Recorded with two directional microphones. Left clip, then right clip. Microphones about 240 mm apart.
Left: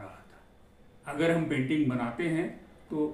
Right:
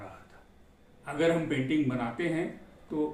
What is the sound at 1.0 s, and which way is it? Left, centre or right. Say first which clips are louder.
A man's voice: right 1 dB; centre.